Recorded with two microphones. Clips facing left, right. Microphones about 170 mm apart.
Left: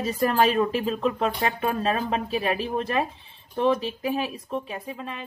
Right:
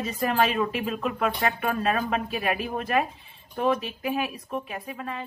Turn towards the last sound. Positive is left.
turn(degrees=20)  # may be behind; listen again after turning